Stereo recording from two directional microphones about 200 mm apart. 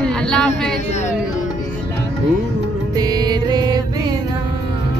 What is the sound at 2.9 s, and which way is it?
Music, 20° right (ahead or behind).